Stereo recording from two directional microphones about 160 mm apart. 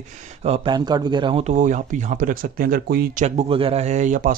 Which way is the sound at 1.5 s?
50° right (ahead or behind).